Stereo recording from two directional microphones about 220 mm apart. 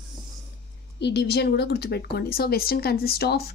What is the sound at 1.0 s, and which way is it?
Speech, 50° left (ahead or behind).